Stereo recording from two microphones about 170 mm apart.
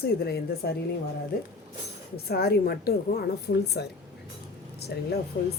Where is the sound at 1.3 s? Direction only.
60° left (ahead or behind).